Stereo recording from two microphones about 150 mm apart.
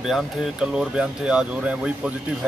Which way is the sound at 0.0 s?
5° right (ahead or behind).